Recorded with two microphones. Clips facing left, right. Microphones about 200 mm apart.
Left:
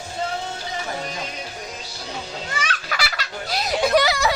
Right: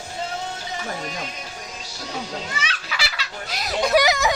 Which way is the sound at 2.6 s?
50° left (ahead or behind).